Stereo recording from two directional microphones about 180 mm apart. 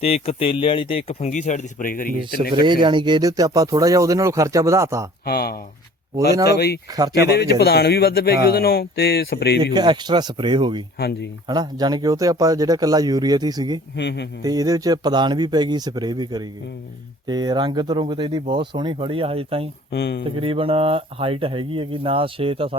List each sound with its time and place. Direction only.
0.0 s speech: 35° left (ahead or behind); by 2.5 s 50° left (ahead or behind)
2.8 s speech: 25° right (ahead or behind)
5.2 s speech: 60° left (ahead or behind)
9.7 s speech: 25° right (ahead or behind)
10.9 s speech: 65° left (ahead or behind)
11.4 s speech: 20° right (ahead or behind)
13.9 s speech: 70° left (ahead or behind)
14.4 s speech: 20° right (ahead or behind)
19.9 s speech: 70° left (ahead or behind)
20.3 s speech: 30° right (ahead or behind)